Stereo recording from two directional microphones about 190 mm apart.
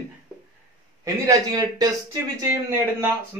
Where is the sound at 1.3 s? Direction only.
20° right (ahead or behind).